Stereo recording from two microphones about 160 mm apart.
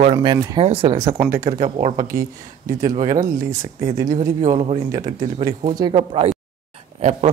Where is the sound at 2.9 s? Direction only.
50° right (ahead or behind).